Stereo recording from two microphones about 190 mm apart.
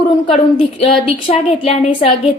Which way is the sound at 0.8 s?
30° left (ahead or behind).